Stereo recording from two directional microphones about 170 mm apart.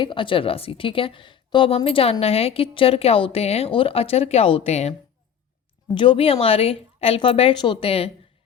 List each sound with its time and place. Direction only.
0.0 s a woman's voice: 30° left (ahead or behind)
5.9 s a woman's voice: 30° left (ahead or behind)